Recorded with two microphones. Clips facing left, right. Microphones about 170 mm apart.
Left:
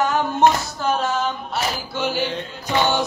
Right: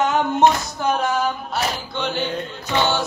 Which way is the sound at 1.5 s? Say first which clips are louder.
Right 1 dB; 5° left (ahead or behind).